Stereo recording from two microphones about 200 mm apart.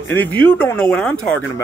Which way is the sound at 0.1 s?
10° left (ahead or behind).